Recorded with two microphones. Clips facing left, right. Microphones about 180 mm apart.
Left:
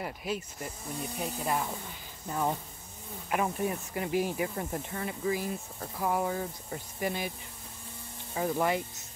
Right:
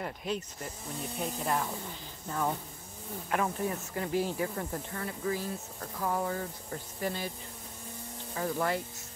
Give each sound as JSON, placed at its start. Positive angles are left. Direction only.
{"t": 0.0, "sound": "speech", "side_deg": 5}
{"t": 8.4, "sound": "speech", "side_deg": 15}